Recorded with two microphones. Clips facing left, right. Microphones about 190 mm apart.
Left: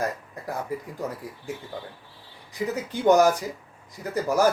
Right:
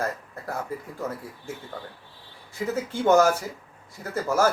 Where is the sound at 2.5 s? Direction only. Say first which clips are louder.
Even; 15° left (ahead or behind).